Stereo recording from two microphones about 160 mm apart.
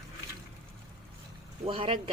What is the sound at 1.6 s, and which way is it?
Speech, 35° right (ahead or behind).